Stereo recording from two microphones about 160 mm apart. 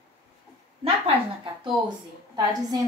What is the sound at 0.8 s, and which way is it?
Speech, 40° right (ahead or behind).